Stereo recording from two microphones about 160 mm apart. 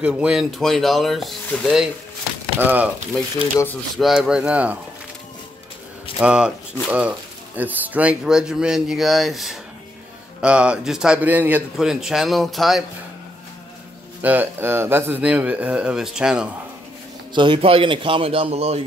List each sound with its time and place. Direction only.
0.0 s speech: 5° right (ahead or behind)
2.6 s speech: 10° right (ahead or behind)
3.9 s speech: centre (ahead or behind)
6.1 s speech: 5° right (ahead or behind)
14.2 s speech: 10° right (ahead or behind)
17.3 s a man's voice: 30° right (ahead or behind)